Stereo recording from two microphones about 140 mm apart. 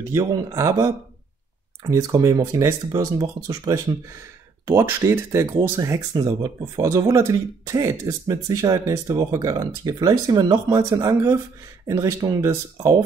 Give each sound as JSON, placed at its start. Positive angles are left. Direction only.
{"t": 0.1, "sound": "speech", "side_deg": -25}